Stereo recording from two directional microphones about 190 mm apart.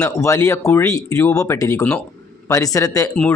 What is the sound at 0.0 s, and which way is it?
Speech, 15° left (ahead or behind).